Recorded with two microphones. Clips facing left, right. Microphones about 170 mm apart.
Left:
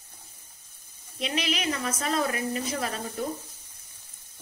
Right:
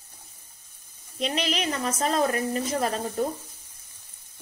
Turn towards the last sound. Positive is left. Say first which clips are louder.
# right 5 dB
turn(degrees=-40)  # may be behind; listen again after turning